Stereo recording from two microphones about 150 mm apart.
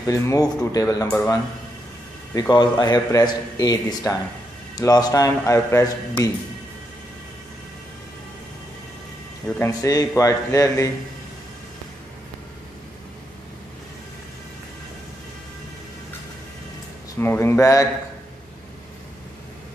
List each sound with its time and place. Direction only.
0.1 s a man's voice: 20° left (ahead or behind)
1.0 s speech: 15° left (ahead or behind)
2.3 s a man's voice: 30° left (ahead or behind)
9.6 s a man's voice: 25° left (ahead or behind)
17.2 s speech: 15° left (ahead or behind)